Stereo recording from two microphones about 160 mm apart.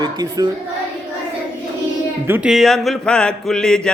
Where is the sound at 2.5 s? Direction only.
Centre (ahead or behind).